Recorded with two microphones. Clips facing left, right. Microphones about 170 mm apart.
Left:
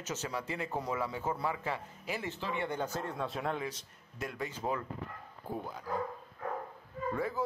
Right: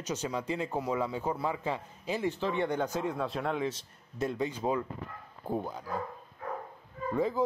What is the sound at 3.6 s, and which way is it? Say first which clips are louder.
Speech: right 6 dB; 25° right (ahead or behind).